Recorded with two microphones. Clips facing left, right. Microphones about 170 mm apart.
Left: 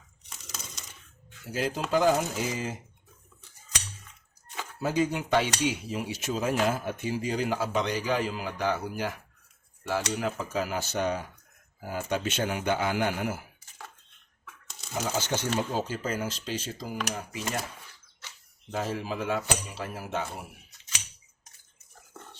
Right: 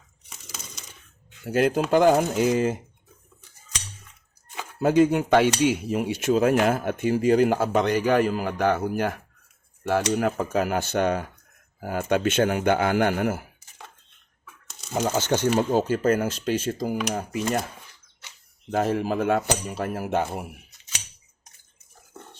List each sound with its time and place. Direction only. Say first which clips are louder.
1.5 s speech: right 9 dB; 60° right (ahead or behind)
4.8 s speech: right 9 dB; 55° right (ahead or behind)
14.9 s speech: right 7 dB; 55° right (ahead or behind)
18.7 s speech: right 8 dB; 60° right (ahead or behind)